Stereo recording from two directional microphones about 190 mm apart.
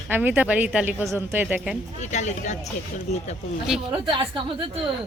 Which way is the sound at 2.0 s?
40° left (ahead or behind).